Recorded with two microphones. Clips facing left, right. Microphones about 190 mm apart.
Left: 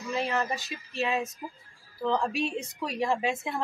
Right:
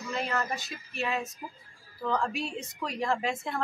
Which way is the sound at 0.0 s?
15° left (ahead or behind).